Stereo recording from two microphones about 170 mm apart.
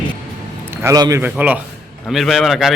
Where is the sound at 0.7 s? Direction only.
20° right (ahead or behind).